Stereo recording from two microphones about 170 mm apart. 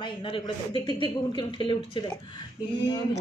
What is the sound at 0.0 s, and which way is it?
Speech, 30° left (ahead or behind).